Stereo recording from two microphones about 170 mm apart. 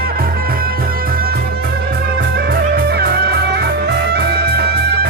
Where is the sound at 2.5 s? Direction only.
65° right (ahead or behind).